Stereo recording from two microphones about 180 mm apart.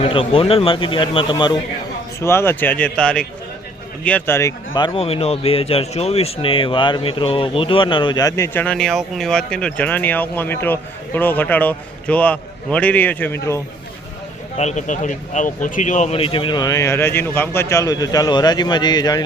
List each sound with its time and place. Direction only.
0.0 s speech: 30° left (ahead or behind)
2.2 s speech: 15° left (ahead or behind)
14.6 s speech: 40° left (ahead or behind); by 19.2 s 20° left (ahead or behind)